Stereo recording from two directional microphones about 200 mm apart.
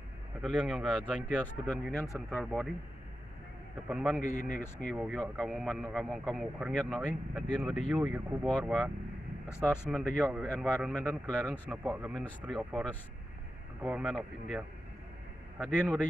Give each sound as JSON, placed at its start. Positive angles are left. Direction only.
{"t": 0.4, "sound": "speech", "side_deg": -5}
{"t": 3.9, "sound": "speech", "side_deg": 0}
{"t": 4.2, "sound": "speech", "side_deg": 40}
{"t": 4.7, "sound": "speech", "side_deg": 5}
{"t": 15.6, "sound": "speech", "side_deg": 0}